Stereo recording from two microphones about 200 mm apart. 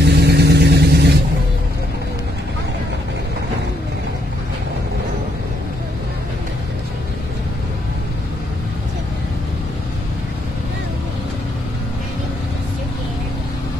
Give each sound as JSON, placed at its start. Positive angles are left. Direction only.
{"t": 0.0, "sound": "vehicle", "side_deg": -55}